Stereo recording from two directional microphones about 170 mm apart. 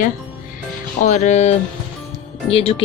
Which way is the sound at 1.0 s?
45° left (ahead or behind).